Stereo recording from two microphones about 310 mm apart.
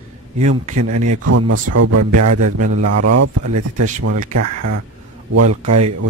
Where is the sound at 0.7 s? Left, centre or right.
Right.